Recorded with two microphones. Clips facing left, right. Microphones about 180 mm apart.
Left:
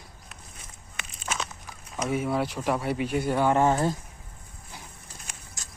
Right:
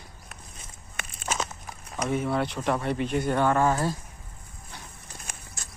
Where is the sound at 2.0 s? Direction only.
5° left (ahead or behind).